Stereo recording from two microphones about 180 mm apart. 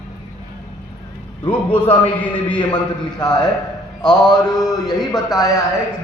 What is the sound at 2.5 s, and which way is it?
A man's voice, 25° left (ahead or behind).